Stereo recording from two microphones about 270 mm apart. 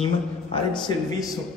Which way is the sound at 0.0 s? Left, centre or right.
Left.